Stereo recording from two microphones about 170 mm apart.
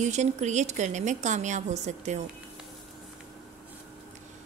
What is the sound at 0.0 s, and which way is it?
A woman's voice, 45° right (ahead or behind).